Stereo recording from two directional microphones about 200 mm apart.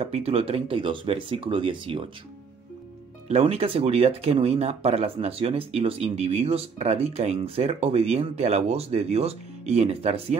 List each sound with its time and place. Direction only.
0.0 s speech: 30° right (ahead or behind)
3.3 s speech: 30° right (ahead or behind)